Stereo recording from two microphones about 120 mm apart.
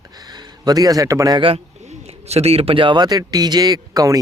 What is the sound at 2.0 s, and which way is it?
A man's voice, 60° right (ahead or behind).